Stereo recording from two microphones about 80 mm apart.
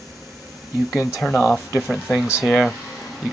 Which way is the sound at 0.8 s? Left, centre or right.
Centre.